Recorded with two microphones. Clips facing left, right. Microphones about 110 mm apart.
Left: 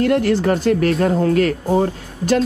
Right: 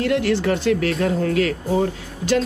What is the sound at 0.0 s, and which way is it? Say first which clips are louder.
Speech: left 3 dB; 45° left (ahead or behind).